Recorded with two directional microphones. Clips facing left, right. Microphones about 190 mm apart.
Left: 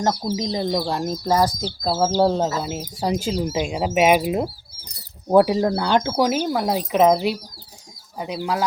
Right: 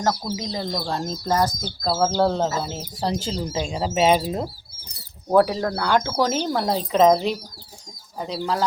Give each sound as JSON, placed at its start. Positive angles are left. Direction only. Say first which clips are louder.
{"t": 0.0, "sound": "speech", "louder": "left 2 dB", "side_deg": 20}